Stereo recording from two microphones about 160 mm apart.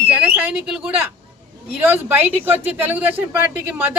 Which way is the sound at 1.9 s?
10° right (ahead or behind).